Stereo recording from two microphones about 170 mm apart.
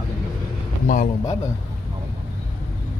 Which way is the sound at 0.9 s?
50° left (ahead or behind).